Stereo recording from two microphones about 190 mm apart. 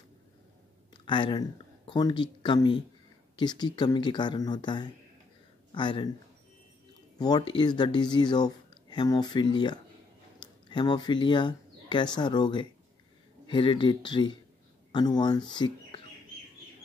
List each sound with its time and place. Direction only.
1.0 s speech: 25° left (ahead or behind)
7.2 s speech: 20° left (ahead or behind)